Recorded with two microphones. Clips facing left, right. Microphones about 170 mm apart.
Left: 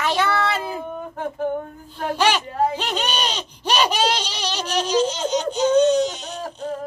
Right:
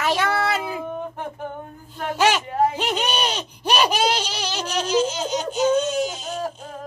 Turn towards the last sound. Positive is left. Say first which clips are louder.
# left 5 dB
turn(degrees=-5)  # may be behind; listen again after turning